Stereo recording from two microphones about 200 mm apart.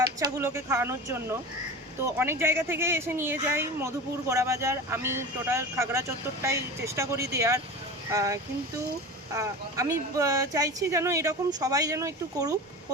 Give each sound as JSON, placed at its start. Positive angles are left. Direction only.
{"t": 0.0, "sound": "speech", "side_deg": -15}